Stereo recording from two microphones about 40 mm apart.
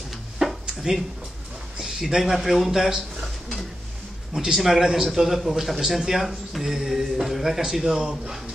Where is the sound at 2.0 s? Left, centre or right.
Centre.